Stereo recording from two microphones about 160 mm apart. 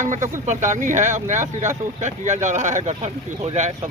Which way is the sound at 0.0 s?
50° right (ahead or behind).